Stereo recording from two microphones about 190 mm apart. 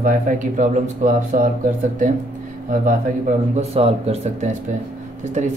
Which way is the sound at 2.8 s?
35° right (ahead or behind).